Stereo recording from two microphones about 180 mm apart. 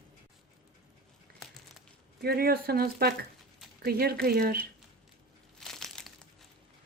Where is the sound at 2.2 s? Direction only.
60° right (ahead or behind).